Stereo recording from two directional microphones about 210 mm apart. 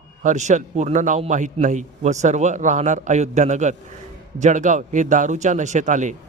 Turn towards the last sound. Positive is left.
turn(degrees=-35)  # may be behind; listen again after turning